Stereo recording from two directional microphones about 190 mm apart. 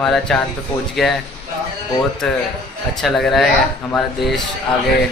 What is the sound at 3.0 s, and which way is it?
Speech, centre (ahead or behind).